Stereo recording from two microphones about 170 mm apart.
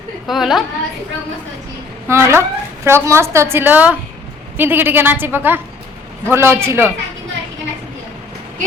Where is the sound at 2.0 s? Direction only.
15° right (ahead or behind).